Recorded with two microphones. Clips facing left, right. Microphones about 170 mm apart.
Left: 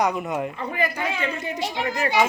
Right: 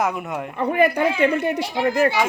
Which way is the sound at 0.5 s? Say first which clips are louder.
Right 8 dB; 60° right (ahead or behind).